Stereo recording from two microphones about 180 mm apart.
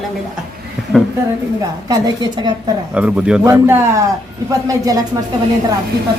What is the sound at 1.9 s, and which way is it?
Speech, 20° right (ahead or behind).